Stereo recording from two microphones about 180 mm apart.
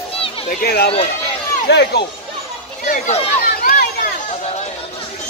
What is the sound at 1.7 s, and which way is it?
Speech, 70° left (ahead or behind).